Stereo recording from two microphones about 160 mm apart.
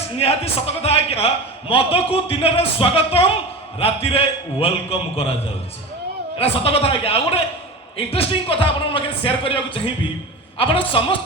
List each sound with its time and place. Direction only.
0.2 s a man's voice: 40° left (ahead or behind)
6.4 s a man's voice: 40° left (ahead or behind)